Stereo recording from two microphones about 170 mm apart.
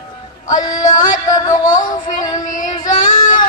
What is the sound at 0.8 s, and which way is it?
Music, 50° left (ahead or behind).